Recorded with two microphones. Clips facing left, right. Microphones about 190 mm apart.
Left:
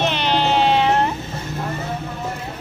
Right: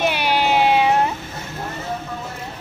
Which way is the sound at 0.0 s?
10° right (ahead or behind).